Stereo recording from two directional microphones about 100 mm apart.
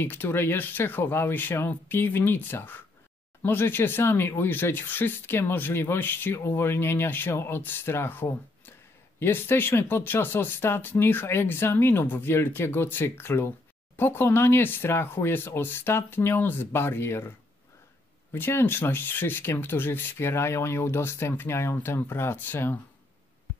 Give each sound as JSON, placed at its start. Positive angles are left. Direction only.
{"t": 0.0, "sound": "speech", "side_deg": 20}
{"t": 18.3, "sound": "speech", "side_deg": 20}